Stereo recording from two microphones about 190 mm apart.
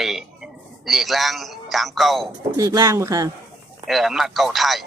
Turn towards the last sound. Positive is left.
turn(degrees=0)  # may be behind; listen again after turning